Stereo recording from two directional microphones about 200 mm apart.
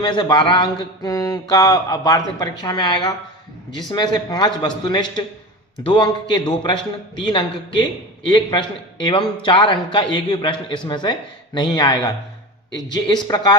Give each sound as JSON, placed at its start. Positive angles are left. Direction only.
{"t": 0.0, "sound": "mantra", "side_deg": 25}